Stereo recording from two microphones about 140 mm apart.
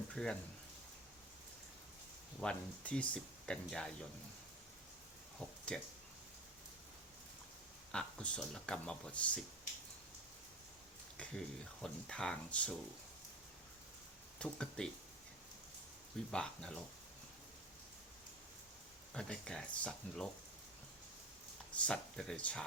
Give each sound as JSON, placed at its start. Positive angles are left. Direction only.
{"t": 0.2, "sound": "speech", "side_deg": 5}
{"t": 2.4, "sound": "speech", "side_deg": 5}
{"t": 5.4, "sound": "a sound", "side_deg": 5}
{"t": 7.9, "sound": "speech", "side_deg": 5}
{"t": 11.2, "sound": "speech", "side_deg": 5}
{"t": 14.3, "sound": "speech", "side_deg": 5}
{"t": 16.3, "sound": "speech", "side_deg": 5}
{"t": 19.1, "sound": "speech", "side_deg": 5}
{"t": 21.8, "sound": "speech", "side_deg": 5}